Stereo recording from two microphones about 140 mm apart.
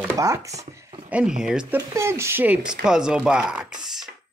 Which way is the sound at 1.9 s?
20° right (ahead or behind).